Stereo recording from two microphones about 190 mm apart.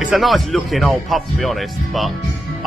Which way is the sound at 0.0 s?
Centre (ahead or behind).